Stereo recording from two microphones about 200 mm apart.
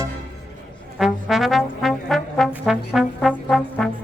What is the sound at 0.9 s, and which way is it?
Trombone, centre (ahead or behind).